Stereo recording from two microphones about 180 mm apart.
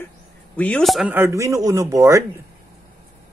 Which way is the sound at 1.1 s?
15° right (ahead or behind).